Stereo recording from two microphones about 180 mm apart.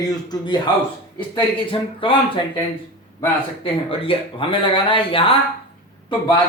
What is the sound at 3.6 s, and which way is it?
Speech, 30° left (ahead or behind).